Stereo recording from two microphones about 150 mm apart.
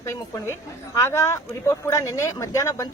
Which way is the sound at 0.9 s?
20° left (ahead or behind).